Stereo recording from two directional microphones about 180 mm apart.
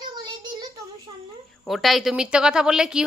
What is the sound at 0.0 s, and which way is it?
Child singing, 25° right (ahead or behind).